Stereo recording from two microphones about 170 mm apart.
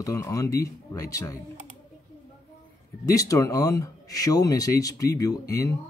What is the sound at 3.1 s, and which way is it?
A man's voice, 20° left (ahead or behind).